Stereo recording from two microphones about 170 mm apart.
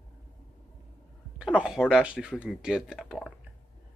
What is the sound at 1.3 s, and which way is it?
Speech, 5° right (ahead or behind).